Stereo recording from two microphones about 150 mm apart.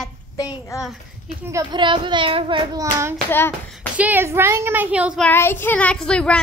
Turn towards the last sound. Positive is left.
turn(degrees=5)  # may be behind; listen again after turning